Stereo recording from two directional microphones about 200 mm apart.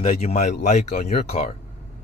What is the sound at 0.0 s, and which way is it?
A man's voice, 35° left (ahead or behind).